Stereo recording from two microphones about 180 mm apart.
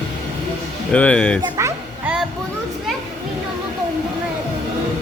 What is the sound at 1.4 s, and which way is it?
Speech, 15° right (ahead or behind).